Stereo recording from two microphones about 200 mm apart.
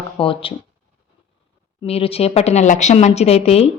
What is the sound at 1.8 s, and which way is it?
Speech, 30° left (ahead or behind).